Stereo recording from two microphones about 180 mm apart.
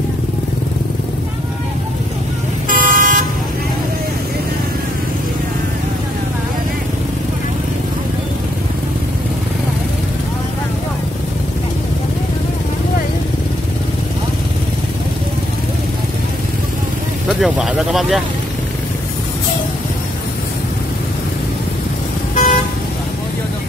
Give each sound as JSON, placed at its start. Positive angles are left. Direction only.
{"t": 2.7, "sound": "vehicle", "side_deg": -50}
{"t": 17.3, "sound": "speech", "side_deg": 0}
{"t": 22.3, "sound": "vehicle", "side_deg": 45}